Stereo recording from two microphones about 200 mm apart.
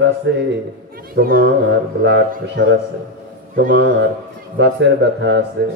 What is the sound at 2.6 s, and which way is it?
A man's voice, 70° right (ahead or behind).